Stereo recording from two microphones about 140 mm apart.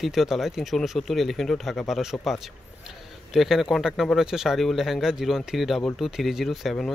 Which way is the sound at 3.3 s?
Centre (ahead or behind).